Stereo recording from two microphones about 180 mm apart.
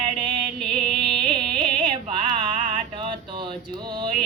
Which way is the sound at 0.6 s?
Centre (ahead or behind).